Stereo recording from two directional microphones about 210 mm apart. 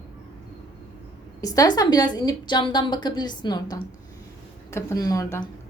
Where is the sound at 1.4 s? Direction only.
15° left (ahead or behind).